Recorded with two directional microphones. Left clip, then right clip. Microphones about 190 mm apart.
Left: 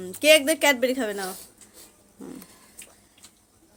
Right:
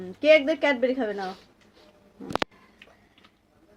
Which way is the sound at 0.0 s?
10° left (ahead or behind).